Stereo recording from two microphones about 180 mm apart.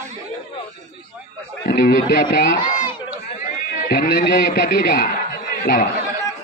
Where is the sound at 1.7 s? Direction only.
55° left (ahead or behind).